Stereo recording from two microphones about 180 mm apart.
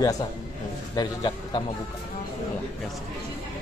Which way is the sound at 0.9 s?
25° left (ahead or behind).